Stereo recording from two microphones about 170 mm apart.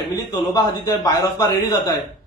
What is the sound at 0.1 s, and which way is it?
A man's voice, 25° left (ahead or behind).